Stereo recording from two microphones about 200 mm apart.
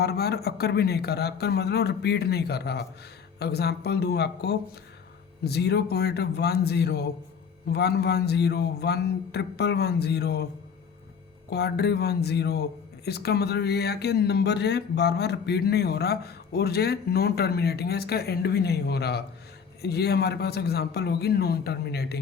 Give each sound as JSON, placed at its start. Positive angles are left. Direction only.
{"t": 0.0, "sound": "speech", "side_deg": 55}
{"t": 11.4, "sound": "speech", "side_deg": 55}